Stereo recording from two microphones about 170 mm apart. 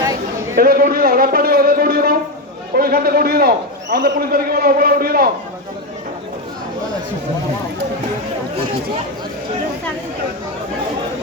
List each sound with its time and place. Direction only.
0.5 s a man's voice: 60° right (ahead or behind)